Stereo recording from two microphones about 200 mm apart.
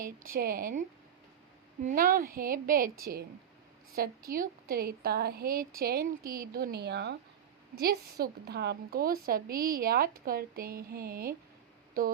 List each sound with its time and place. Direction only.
0.3 s a woman's voice: 45° right (ahead or behind)